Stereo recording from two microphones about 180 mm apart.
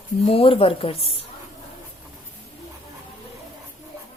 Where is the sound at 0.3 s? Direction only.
30° left (ahead or behind).